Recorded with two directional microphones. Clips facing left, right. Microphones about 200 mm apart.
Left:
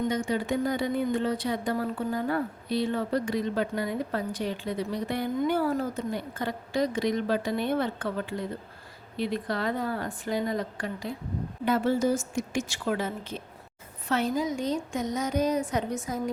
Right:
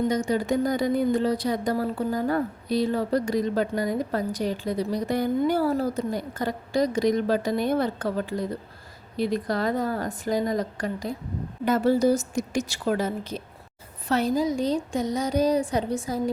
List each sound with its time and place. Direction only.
0.1 s speech: 40° right (ahead or behind)